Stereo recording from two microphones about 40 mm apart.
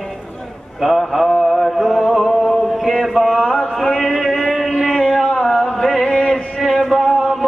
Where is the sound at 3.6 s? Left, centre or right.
Centre.